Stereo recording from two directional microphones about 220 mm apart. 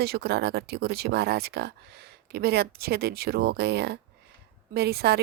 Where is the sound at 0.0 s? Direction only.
45° right (ahead or behind).